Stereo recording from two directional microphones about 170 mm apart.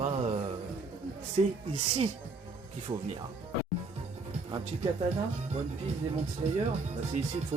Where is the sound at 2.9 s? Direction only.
30° right (ahead or behind).